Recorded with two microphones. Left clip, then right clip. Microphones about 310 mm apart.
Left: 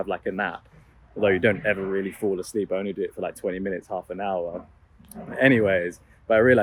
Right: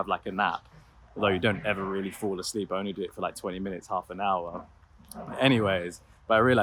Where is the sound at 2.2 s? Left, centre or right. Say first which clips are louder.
Left 6 dB; right.